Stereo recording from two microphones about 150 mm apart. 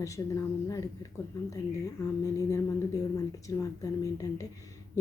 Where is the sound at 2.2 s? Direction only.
20° left (ahead or behind).